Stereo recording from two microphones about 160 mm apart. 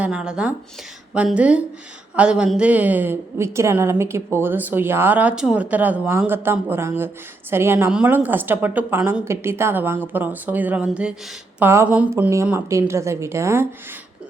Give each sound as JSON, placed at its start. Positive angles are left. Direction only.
{"t": 0.0, "sound": "a woman's voice", "side_deg": -5}